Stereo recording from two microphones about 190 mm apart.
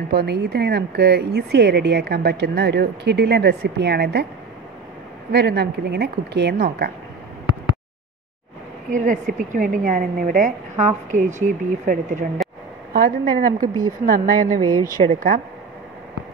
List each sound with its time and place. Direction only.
0.1 s speech: 60° right (ahead or behind)
5.3 s speech: 60° right (ahead or behind)
8.9 s a woman's voice: 45° right (ahead or behind)
13.6 s speech: 20° right (ahead or behind)
14.0 s a woman's voice: 45° right (ahead or behind)
14.6 s speech: 20° right (ahead or behind)